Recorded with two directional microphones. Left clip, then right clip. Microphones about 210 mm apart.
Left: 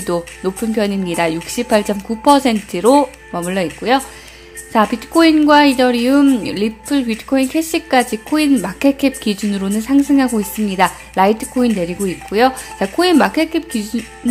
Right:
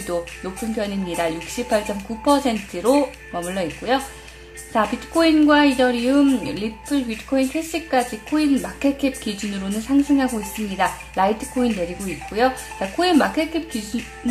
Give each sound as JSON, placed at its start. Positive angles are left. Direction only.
{"t": 0.0, "sound": "a woman's voice", "side_deg": 25}